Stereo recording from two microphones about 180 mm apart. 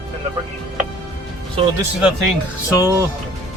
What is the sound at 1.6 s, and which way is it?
Speech, 30° right (ahead or behind).